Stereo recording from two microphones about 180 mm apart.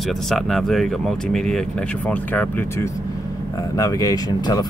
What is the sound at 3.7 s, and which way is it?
Speech, 20° left (ahead or behind).